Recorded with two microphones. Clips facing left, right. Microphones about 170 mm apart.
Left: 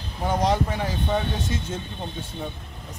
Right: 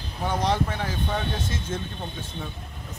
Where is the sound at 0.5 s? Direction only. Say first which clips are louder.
Left 2 dB; 15° left (ahead or behind).